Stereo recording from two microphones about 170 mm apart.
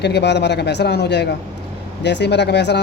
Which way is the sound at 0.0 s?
80° left.